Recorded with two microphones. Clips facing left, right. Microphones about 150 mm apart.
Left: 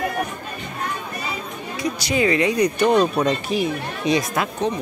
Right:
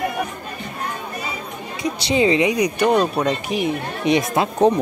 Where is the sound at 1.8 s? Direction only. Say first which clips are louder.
Right 2 dB; 25° right (ahead or behind); by 3.3 s 5° right (ahead or behind).